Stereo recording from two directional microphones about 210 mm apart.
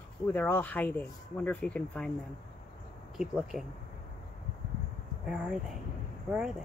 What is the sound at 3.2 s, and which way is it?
Speech, 5° right (ahead or behind).